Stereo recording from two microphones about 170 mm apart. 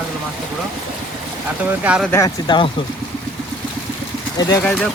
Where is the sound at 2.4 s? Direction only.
25° left (ahead or behind).